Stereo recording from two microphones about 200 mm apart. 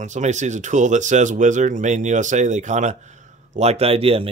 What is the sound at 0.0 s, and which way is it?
Speech, 35° right (ahead or behind).